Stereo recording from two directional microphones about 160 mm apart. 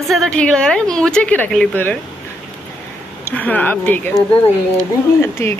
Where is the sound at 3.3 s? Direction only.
10° left (ahead or behind).